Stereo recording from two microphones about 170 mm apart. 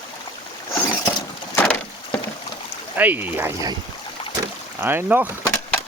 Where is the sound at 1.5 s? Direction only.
10° left (ahead or behind).